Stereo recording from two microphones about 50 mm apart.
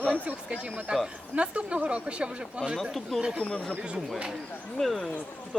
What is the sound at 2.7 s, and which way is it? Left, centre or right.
Speech, centre.